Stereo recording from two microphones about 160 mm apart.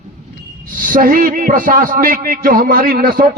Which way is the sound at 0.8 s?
60° right (ahead or behind).